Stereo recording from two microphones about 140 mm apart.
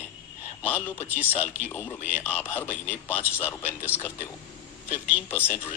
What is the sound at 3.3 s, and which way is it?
Speech, 15° left (ahead or behind).